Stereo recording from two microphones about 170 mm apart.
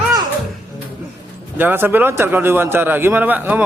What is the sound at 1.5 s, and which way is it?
A man's voice, 10° right (ahead or behind).